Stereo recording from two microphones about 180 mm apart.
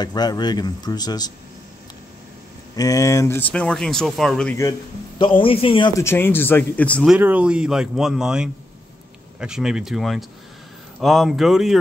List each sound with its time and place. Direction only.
0.0 s speech: 20° left (ahead or behind)
2.7 s speech: 20° left (ahead or behind); by 4.6 s 5° left (ahead or behind)
5.2 s speech: 30° left (ahead or behind); by 7.1 s 10° left (ahead or behind)
7.1 s speech: 10° right (ahead or behind)